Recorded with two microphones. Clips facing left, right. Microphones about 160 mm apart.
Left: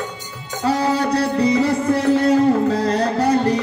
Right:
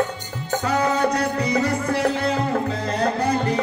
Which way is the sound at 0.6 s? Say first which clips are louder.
Left 3 dB; 35° left (ahead or behind).